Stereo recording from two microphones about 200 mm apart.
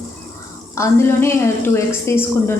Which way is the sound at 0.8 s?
15° left (ahead or behind).